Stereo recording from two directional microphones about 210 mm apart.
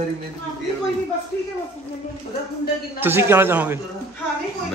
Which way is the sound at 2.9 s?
10° right (ahead or behind).